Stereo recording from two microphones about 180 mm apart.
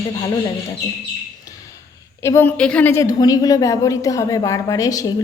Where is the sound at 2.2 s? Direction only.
15° left (ahead or behind).